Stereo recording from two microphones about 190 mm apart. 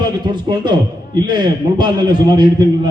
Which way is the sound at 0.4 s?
25° right (ahead or behind).